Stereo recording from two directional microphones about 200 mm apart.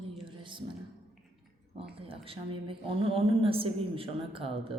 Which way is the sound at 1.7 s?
30° right (ahead or behind).